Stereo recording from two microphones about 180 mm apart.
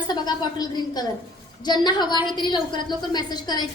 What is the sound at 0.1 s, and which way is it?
A woman's voice, 20° left (ahead or behind).